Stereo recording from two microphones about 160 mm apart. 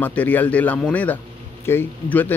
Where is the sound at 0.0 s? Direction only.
10° left (ahead or behind).